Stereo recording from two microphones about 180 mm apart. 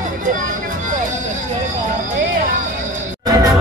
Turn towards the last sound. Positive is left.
turn(degrees=-20)  # may be behind; listen again after turning